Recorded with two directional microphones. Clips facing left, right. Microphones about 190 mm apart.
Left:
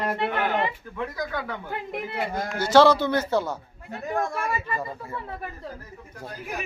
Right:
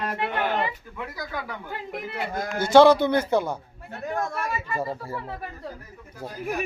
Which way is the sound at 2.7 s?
15° right (ahead or behind).